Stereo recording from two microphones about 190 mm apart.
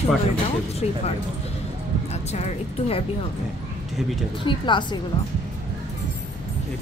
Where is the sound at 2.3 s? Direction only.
35° left (ahead or behind).